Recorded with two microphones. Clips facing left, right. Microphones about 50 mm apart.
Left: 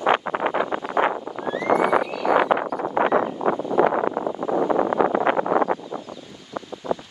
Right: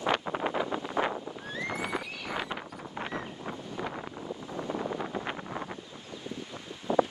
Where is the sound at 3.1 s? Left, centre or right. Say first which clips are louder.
Left 17 dB; left.